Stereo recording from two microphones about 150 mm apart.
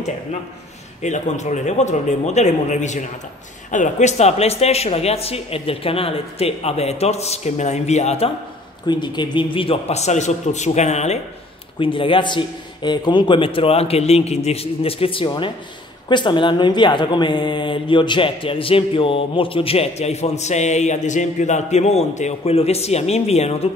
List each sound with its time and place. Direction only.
1.0 s speech: 50° left (ahead or behind)
8.8 s speech: 30° left (ahead or behind); by 11.1 s 50° left (ahead or behind)
11.8 s speech: 35° left (ahead or behind)